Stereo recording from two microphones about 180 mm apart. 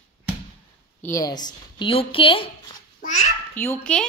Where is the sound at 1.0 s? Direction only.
20° left (ahead or behind).